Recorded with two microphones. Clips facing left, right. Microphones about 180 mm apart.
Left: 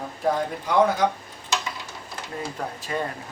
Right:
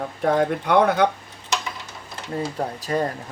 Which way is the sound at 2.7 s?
40° right (ahead or behind).